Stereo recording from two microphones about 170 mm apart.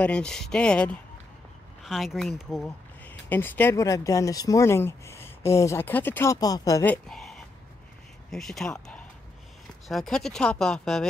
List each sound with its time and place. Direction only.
0.0 s speech: 5° left (ahead or behind)
3.1 s speech: 10° left (ahead or behind)